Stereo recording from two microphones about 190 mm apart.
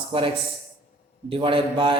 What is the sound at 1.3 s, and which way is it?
Speech, 30° right (ahead or behind).